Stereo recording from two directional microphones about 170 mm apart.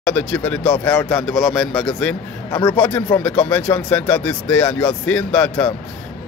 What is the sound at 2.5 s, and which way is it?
Speech, 25° left (ahead or behind).